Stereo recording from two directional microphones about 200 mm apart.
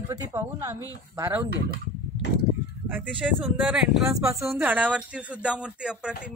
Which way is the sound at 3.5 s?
5° right (ahead or behind).